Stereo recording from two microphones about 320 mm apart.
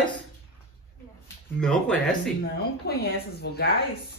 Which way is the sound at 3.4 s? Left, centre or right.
Left.